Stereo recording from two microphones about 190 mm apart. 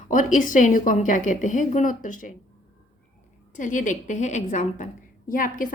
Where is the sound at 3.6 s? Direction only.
40° left (ahead or behind).